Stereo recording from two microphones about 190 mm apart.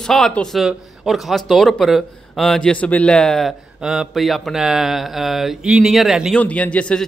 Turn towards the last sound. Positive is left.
turn(degrees=5)  # may be behind; listen again after turning